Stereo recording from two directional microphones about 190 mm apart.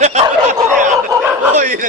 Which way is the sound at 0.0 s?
40° right (ahead or behind).